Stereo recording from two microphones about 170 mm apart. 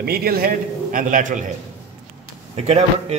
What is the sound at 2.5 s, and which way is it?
Speech, 40° right (ahead or behind).